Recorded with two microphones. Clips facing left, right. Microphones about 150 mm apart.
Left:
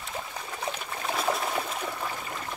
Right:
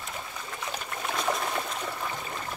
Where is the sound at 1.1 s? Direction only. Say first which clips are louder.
Left 1 dB; 5° left (ahead or behind).